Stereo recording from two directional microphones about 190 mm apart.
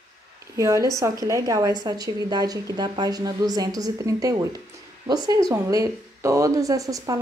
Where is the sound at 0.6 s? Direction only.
15° right (ahead or behind).